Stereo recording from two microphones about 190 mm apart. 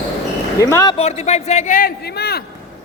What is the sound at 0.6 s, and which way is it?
Speech, 20° left (ahead or behind).